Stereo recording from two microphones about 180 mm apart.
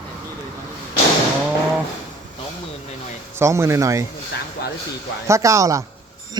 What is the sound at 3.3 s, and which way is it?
Speech, 15° right (ahead or behind).